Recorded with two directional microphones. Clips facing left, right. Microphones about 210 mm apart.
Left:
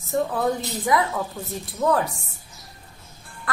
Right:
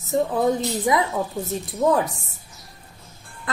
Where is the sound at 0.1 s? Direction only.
20° right (ahead or behind).